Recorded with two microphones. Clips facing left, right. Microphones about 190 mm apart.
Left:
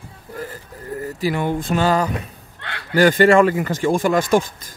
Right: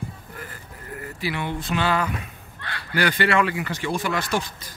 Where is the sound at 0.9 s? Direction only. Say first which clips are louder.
Left 7 dB; 40° left (ahead or behind).